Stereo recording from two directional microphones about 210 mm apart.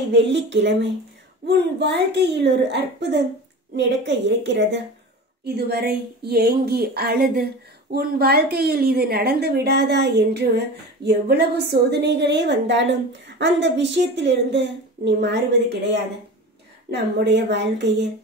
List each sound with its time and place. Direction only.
0.1 s a woman's voice: 55° right (ahead or behind)